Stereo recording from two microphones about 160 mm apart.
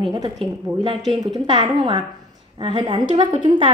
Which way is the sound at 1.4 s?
30° right (ahead or behind).